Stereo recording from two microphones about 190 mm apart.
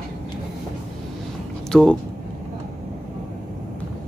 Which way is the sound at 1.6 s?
5° left (ahead or behind).